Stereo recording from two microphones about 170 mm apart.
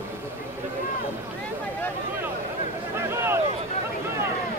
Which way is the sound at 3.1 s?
15° right (ahead or behind).